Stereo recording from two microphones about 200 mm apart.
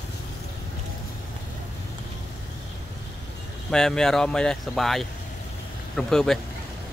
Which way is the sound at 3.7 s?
5° left (ahead or behind).